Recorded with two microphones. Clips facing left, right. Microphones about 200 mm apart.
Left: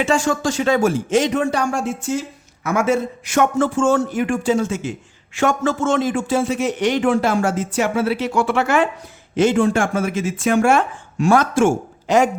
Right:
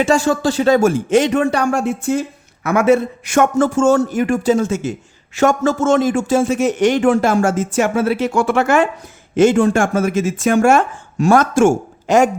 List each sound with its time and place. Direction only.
0.0 s a man's voice: 40° right (ahead or behind)